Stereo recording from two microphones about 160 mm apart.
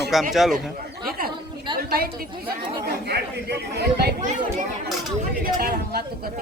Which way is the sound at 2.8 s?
90° right.